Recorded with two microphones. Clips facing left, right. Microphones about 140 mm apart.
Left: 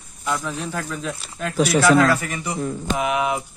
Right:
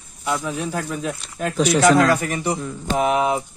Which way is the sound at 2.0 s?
40° right (ahead or behind).